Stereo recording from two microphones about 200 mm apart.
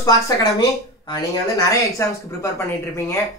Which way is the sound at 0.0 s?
15° left (ahead or behind).